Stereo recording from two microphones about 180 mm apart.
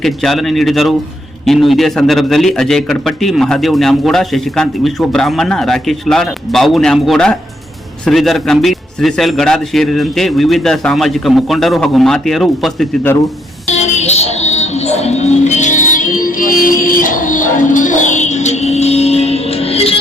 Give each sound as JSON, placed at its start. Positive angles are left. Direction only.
{"t": 0.0, "sound": "a man's voice", "side_deg": 0}
{"t": 13.7, "sound": "music", "side_deg": 40}